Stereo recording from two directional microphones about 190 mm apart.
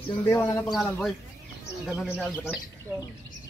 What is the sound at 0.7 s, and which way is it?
Speech, centre (ahead or behind).